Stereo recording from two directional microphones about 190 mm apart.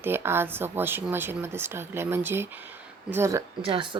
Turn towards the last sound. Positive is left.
turn(degrees=-30)  # may be behind; listen again after turning